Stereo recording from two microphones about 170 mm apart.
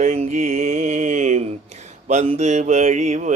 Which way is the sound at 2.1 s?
40° right (ahead or behind).